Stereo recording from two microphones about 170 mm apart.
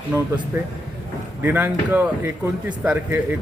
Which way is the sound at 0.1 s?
15° right (ahead or behind).